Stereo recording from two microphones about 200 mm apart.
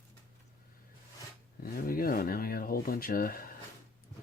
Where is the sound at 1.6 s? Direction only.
45° left (ahead or behind).